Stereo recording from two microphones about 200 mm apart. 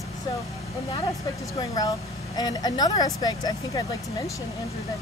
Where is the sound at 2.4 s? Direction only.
20° left (ahead or behind).